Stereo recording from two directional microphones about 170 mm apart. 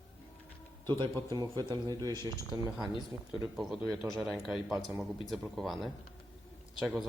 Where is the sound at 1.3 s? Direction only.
25° right (ahead or behind).